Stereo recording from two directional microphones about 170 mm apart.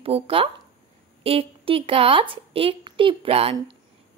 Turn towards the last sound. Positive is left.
turn(degrees=-35)  # may be behind; listen again after turning